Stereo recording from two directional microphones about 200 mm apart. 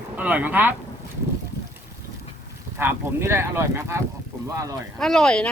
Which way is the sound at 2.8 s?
10° right (ahead or behind).